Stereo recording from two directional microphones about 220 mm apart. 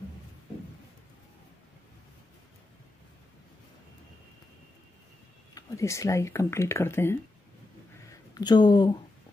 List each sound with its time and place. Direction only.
5.5 s speech: 15° left (ahead or behind)
8.4 s speech: 20° left (ahead or behind)